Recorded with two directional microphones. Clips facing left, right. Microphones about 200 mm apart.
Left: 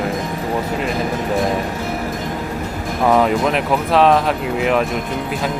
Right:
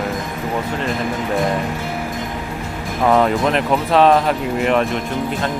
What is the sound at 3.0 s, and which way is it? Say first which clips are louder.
Speech: even; centre (ahead or behind).